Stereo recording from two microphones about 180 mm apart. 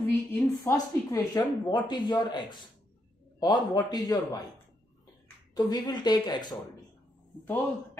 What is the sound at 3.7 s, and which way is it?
Speech, 20° left (ahead or behind).